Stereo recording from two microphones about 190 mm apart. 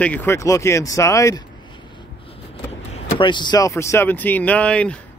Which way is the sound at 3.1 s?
25° left (ahead or behind).